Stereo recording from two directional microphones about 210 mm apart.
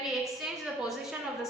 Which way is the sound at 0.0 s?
Centre (ahead or behind).